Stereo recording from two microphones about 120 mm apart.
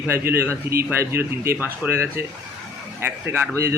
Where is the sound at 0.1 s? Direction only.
20° right (ahead or behind).